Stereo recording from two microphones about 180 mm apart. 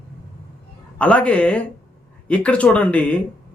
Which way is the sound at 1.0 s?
5° left (ahead or behind).